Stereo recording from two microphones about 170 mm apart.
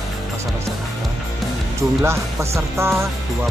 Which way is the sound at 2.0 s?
15° right (ahead or behind).